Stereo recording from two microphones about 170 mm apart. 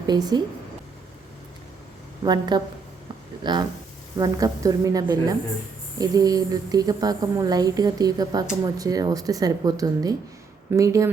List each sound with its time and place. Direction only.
0.1 s a woman's voice: 25° right (ahead or behind)
2.2 s a woman's voice: 25° right (ahead or behind)